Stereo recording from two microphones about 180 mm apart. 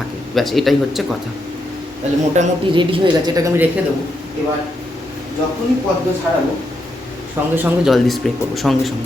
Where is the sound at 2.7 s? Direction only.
25° right (ahead or behind).